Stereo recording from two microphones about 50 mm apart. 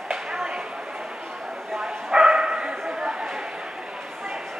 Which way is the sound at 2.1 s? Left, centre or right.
Centre.